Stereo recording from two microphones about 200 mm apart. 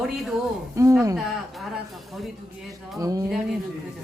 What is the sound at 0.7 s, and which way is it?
Speech, 15° right (ahead or behind).